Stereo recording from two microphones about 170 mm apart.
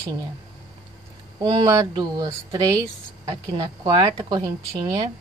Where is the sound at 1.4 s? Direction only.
25° right (ahead or behind).